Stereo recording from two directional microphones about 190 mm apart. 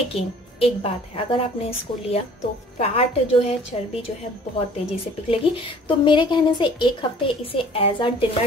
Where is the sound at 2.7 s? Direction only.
30° left (ahead or behind).